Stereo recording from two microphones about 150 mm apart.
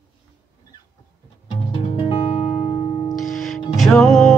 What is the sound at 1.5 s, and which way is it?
Music, 35° left (ahead or behind).